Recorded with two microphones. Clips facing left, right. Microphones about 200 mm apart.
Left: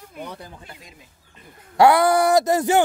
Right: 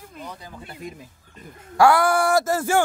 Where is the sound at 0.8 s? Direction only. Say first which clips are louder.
Right 11 dB; 55° right (ahead or behind).